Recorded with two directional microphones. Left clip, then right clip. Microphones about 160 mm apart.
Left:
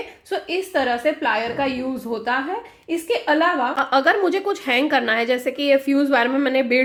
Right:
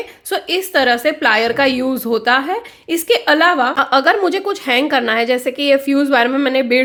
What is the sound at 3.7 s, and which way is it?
A woman's voice, 25° right (ahead or behind).